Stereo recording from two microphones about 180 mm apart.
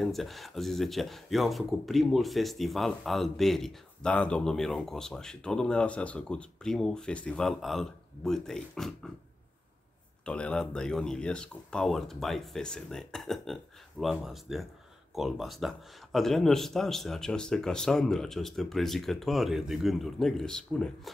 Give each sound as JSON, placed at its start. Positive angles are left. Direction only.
{"t": 0.0, "sound": "speech", "side_deg": 0}
{"t": 10.2, "sound": "speech", "side_deg": 5}